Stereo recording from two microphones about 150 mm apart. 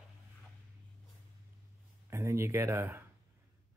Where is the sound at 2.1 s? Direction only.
20° right (ahead or behind).